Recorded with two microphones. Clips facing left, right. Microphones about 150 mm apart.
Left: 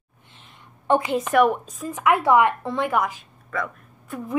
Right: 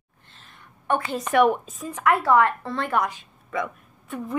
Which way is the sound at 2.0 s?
15° left (ahead or behind).